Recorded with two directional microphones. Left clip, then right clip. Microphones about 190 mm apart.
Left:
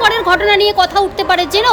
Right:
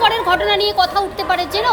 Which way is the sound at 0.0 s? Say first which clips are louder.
Left 3 dB; 30° left (ahead or behind).